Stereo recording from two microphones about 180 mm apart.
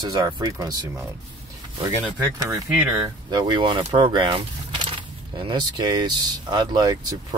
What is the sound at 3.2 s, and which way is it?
Speech, 25° right (ahead or behind).